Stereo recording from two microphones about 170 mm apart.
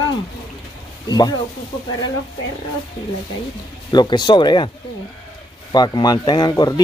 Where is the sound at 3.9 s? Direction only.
25° left (ahead or behind).